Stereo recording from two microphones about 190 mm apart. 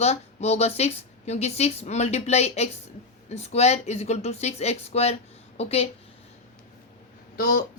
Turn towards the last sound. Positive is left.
turn(degrees=45)  # may be behind; listen again after turning